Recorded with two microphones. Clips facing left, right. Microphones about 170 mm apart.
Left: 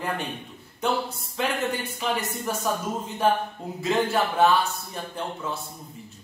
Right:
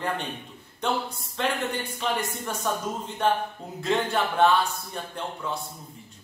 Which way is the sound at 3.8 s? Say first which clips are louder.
Left 2 dB; 5° left (ahead or behind).